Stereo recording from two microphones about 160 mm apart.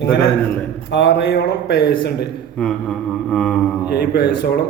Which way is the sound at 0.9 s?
90° left.